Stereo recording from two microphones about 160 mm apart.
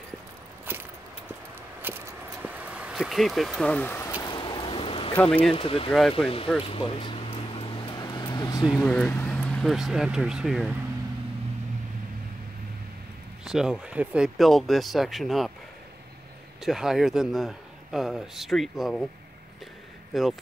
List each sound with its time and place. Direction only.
0.7 s a sound: 10° right (ahead or behind)
1.8 s vehicle: 10° right (ahead or behind); by 4.1 s 10° left (ahead or behind)
4.2 s a sound: 30° left (ahead or behind)
5.5 s speech: 35° left (ahead or behind)
5.9 s a man's voice: centre (ahead or behind)
6.1 s speech: 35° left (ahead or behind)
6.6 s vehicle: 35° left (ahead or behind)
8.8 s speech: 10° left (ahead or behind)
13.4 s a man's voice: 5° right (ahead or behind)
16.6 s a man's voice: 5° right (ahead or behind)
20.1 s a man's voice: centre (ahead or behind)